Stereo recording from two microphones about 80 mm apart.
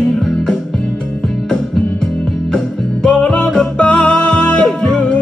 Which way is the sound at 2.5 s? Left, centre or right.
Centre.